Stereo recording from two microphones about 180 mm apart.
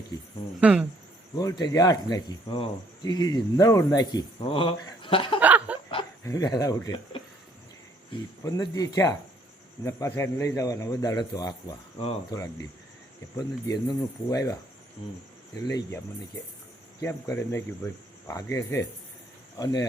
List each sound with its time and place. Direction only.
0.6 s speech: 5° right (ahead or behind)
1.4 s speech: 20° left (ahead or behind)
5.4 s a sound: 10° right (ahead or behind)
6.2 s speech: 20° left (ahead or behind)
8.4 s speech: 20° left (ahead or behind)
17.0 s cricket: 15° left (ahead or behind)
19.5 s speech: 20° left (ahead or behind)